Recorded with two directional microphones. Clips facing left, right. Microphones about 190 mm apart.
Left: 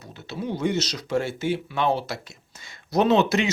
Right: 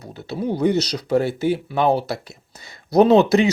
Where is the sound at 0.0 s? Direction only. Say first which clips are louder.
Right 6 dB; 35° right (ahead or behind).